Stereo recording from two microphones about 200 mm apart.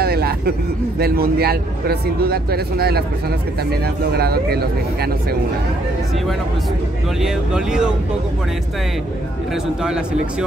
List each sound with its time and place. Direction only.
0.0 s speech: 50° right (ahead or behind)
7.2 s speech: 5° right (ahead or behind)